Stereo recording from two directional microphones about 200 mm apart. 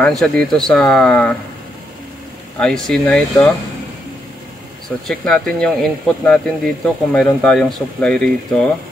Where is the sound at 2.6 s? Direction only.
5° left (ahead or behind).